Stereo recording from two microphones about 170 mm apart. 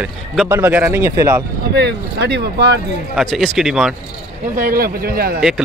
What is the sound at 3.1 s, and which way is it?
Speech, centre (ahead or behind).